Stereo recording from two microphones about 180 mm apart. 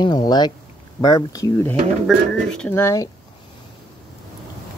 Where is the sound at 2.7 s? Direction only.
15° left (ahead or behind).